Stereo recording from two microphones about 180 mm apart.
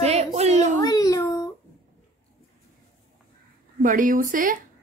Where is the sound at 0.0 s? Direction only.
35° right (ahead or behind).